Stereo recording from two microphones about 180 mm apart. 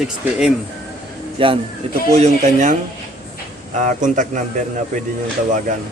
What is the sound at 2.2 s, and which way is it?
Speech, 45° right (ahead or behind).